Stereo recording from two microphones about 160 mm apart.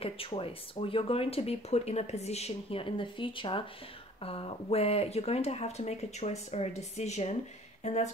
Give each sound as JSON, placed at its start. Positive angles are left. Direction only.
{"t": 0.0, "sound": "speech", "side_deg": 35}